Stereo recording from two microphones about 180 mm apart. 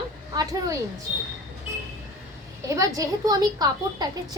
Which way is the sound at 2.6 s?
20° right (ahead or behind).